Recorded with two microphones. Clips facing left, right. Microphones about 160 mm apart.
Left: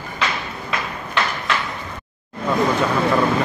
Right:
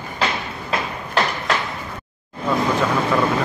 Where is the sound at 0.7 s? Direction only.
40° right (ahead or behind).